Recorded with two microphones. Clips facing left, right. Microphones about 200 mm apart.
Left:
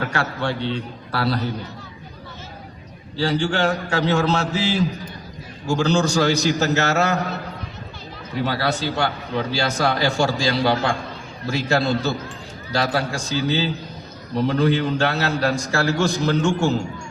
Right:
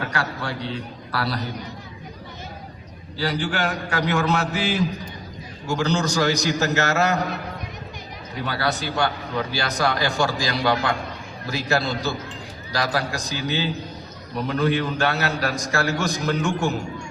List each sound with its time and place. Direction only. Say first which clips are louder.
0.1 s a man's voice: left 4 dB; 25° left (ahead or behind)
3.2 s a man's voice: left 4 dB; 25° left (ahead or behind)
8.4 s a man's voice: left 2 dB; 25° left (ahead or behind)